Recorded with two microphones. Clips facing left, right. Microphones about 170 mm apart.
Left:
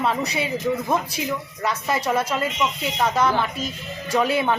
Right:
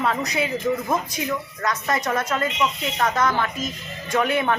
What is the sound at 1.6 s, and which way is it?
Speech, 10° left (ahead or behind).